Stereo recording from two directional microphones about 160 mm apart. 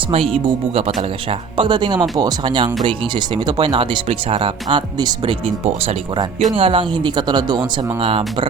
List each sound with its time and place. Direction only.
0.1 s speech: 35° right (ahead or behind)
1.5 s speech: 30° right (ahead or behind)